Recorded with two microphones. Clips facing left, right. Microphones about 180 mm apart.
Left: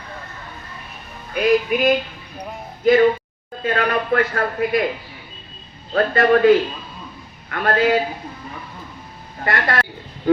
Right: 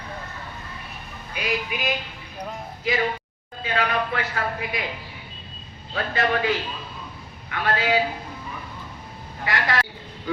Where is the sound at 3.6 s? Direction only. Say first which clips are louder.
Left 4 dB; 50° left (ahead or behind).